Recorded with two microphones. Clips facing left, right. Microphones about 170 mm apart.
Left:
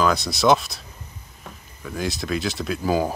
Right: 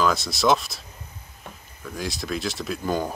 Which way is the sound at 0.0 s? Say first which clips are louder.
Left 2 dB; centre (ahead or behind).